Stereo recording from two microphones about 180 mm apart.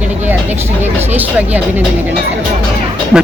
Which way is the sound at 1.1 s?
10° right (ahead or behind).